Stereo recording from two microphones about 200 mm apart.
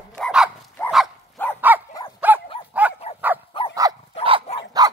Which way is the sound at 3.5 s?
25° left (ahead or behind).